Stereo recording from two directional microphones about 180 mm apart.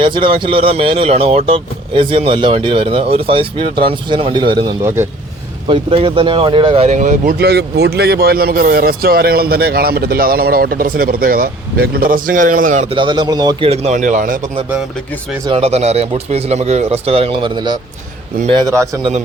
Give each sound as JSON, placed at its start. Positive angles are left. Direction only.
{"t": 0.0, "sound": "speech", "side_deg": -30}
{"t": 4.8, "sound": "a man's voice", "side_deg": -15}
{"t": 5.6, "sound": "speech", "side_deg": -30}
{"t": 7.3, "sound": "speech", "side_deg": -65}
{"t": 12.9, "sound": "speech", "side_deg": -25}
{"t": 13.7, "sound": "speech", "side_deg": -40}
{"t": 15.4, "sound": "speech", "side_deg": -35}